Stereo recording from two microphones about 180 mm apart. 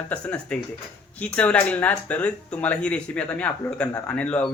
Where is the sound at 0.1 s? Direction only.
5° left (ahead or behind).